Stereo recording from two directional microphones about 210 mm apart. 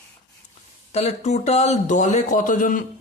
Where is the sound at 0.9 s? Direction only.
30° left (ahead or behind).